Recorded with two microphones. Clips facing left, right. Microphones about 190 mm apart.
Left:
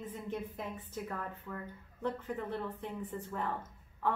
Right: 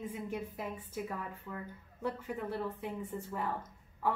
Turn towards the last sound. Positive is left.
turn(degrees=-10)  # may be behind; listen again after turning